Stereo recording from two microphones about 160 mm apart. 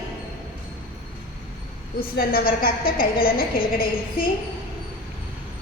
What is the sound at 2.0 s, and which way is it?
A woman's voice, 65° left (ahead or behind).